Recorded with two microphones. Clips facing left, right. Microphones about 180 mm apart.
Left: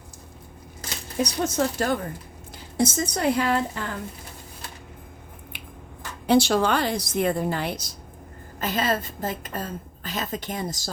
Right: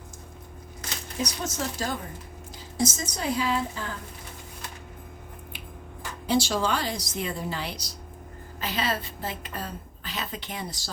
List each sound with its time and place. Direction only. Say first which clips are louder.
1.2 s a woman's voice: left 7 dB; 60° left (ahead or behind)
6.2 s a woman's voice: left 6 dB; 60° left (ahead or behind); by 10.8 s 45° left (ahead or behind)